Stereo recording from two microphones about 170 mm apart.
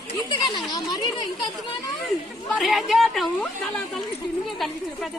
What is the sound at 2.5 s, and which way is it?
Speech, centre (ahead or behind).